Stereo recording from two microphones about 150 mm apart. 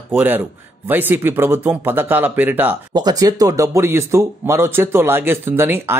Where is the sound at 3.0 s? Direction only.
25° right (ahead or behind).